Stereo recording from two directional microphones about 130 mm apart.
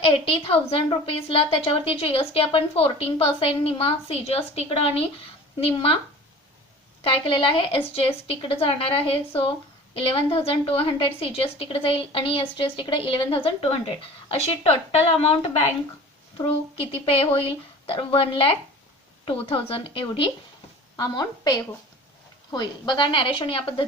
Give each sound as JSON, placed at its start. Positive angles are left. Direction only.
{"t": 0.3, "sound": "a woman's voice", "side_deg": 50}
{"t": 7.0, "sound": "a woman's voice", "side_deg": 45}
{"t": 20.9, "sound": "a woman's voice", "side_deg": 30}